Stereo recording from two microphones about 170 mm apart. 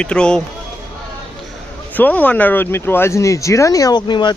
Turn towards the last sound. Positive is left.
turn(degrees=25)  # may be behind; listen again after turning